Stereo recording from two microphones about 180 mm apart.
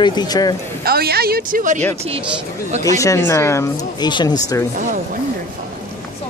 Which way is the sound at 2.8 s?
15° left (ahead or behind).